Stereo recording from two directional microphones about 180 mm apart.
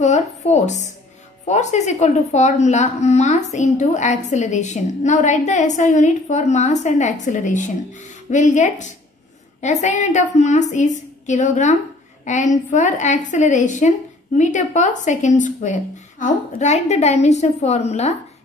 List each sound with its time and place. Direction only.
0.0 s a woman's voice: 40° left (ahead or behind)